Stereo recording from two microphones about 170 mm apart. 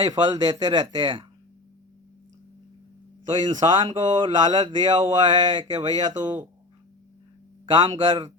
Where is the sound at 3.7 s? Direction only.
25° right (ahead or behind).